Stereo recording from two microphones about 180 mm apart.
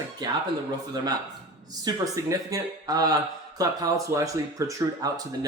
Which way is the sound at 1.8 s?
20° right (ahead or behind).